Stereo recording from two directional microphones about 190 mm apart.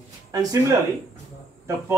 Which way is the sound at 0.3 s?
20° right (ahead or behind).